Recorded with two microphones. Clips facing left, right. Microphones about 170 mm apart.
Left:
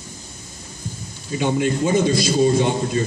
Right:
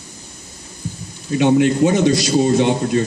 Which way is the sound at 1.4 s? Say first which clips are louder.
Right 7 dB; 70° right (ahead or behind).